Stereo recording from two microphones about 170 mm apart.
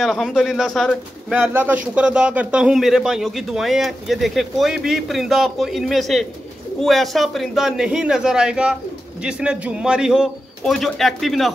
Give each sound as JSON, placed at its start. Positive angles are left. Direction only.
{"t": 0.0, "sound": "speech", "side_deg": 0}
{"t": 1.3, "sound": "speech", "side_deg": -10}